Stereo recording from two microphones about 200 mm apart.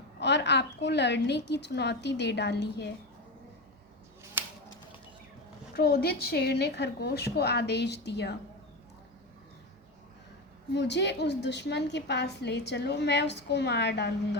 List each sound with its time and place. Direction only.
0.2 s a woman's voice: 60° left (ahead or behind)
4.4 s a sound: 10° right (ahead or behind)
5.7 s a woman's voice: 50° left (ahead or behind)
10.8 s a woman's voice: 60° left (ahead or behind)